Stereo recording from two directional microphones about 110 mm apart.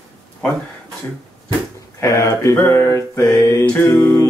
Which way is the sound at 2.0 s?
30° left (ahead or behind).